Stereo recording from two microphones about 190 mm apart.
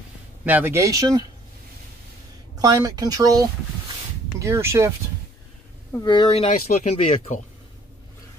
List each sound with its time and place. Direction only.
0.5 s speech: 10° right (ahead or behind)
2.5 s speech: 20° right (ahead or behind)
5.9 s speech: 25° left (ahead or behind)